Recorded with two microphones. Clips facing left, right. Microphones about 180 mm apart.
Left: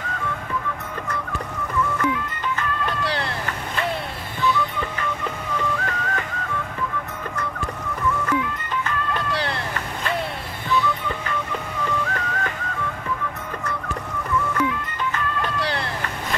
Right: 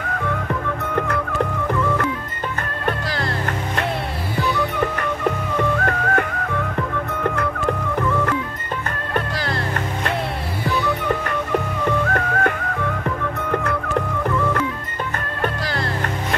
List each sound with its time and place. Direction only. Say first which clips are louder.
0.5 s music: right 5 dB; 60° right (ahead or behind)
2.6 s music: right 4 dB; 55° right (ahead or behind)
4.4 s music: right 2 dB; 65° right (ahead or behind)
10.7 s music: right 2 dB; 65° right (ahead or behind)
13.5 s music: right 7 dB; 65° right (ahead or behind)